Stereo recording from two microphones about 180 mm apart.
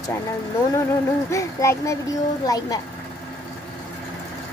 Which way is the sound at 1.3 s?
15° left (ahead or behind).